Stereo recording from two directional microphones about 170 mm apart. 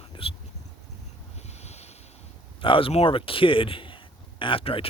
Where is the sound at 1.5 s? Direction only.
40° left (ahead or behind).